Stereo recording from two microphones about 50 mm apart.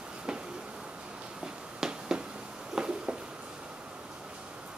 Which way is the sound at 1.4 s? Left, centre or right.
Centre.